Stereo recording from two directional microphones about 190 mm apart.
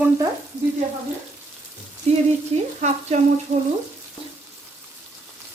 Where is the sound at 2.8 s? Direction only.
40° right (ahead or behind).